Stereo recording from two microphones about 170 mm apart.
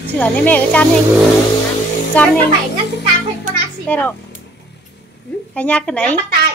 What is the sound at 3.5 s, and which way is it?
Music, 50° right (ahead or behind).